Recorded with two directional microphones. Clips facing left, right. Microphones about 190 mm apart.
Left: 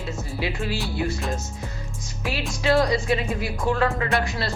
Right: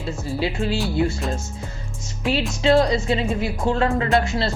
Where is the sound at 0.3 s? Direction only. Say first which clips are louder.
Right 4 dB; 30° right (ahead or behind).